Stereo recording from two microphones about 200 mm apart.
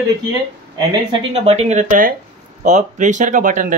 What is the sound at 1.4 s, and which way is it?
Speech, 30° right (ahead or behind).